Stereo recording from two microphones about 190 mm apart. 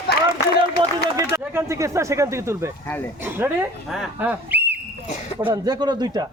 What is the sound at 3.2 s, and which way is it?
A man's voice, 10° right (ahead or behind).